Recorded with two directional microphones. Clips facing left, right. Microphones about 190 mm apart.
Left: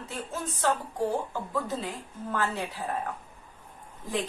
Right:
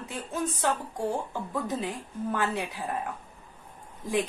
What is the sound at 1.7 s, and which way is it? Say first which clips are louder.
A woman's voice: right 2 dB; 15° right (ahead or behind).